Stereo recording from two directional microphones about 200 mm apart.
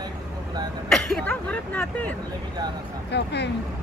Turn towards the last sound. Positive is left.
turn(degrees=60)  # may be behind; listen again after turning